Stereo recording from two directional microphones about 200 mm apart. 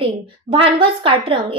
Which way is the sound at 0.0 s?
30° right (ahead or behind).